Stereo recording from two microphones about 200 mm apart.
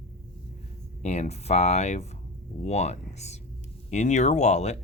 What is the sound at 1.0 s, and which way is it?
Speech, 35° left (ahead or behind).